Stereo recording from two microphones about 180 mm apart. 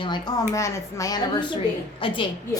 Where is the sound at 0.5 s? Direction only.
15° left (ahead or behind).